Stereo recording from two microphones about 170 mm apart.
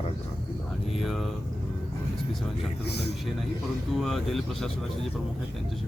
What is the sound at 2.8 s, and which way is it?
Speech, 75° left (ahead or behind).